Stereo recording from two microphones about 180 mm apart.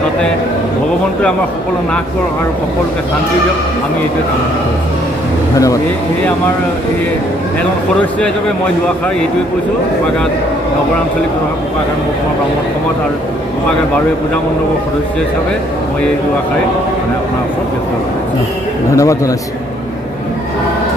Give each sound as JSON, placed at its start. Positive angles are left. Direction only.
{"t": 18.9, "sound": "a man's voice", "side_deg": 15}